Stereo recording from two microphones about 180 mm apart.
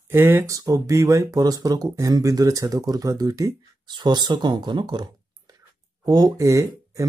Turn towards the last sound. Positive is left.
turn(degrees=-20)  # may be behind; listen again after turning